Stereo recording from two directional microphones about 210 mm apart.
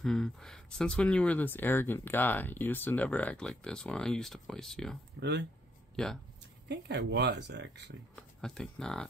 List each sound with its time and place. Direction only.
0.0 s speech: centre (ahead or behind)
5.2 s speech: 55° right (ahead or behind)
6.0 s speech: centre (ahead or behind)
6.7 s speech: 55° right (ahead or behind)
8.2 s speech: 5° left (ahead or behind)